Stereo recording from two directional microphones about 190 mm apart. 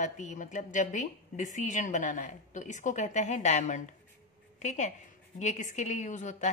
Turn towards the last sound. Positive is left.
turn(degrees=40)  # may be behind; listen again after turning